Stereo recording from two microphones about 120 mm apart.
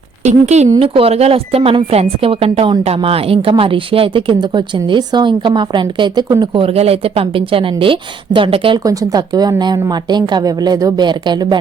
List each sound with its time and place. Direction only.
0.3 s speech: 70° right (ahead or behind)
0.8 s speech: 55° right (ahead or behind)
8.8 s speech: 30° right (ahead or behind)